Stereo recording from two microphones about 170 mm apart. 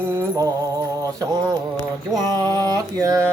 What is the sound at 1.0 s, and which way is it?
Music, 20° right (ahead or behind).